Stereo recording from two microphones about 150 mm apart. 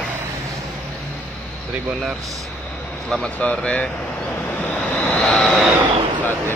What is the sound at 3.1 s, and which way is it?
Speech, 5° left (ahead or behind).